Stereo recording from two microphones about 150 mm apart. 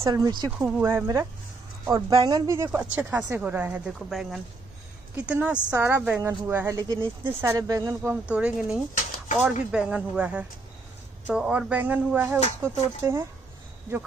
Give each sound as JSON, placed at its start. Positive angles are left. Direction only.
{"t": 0.0, "sound": "speech", "side_deg": -25}
{"t": 0.5, "sound": "speech", "side_deg": -10}
{"t": 2.0, "sound": "speech", "side_deg": -30}